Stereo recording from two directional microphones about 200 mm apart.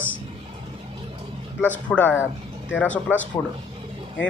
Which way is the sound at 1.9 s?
10° left (ahead or behind).